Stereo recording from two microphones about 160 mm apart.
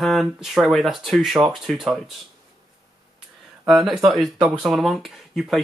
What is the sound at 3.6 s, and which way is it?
Speech, centre (ahead or behind).